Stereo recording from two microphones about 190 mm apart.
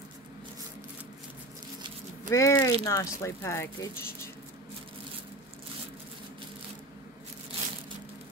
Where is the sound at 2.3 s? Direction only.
15° left (ahead or behind).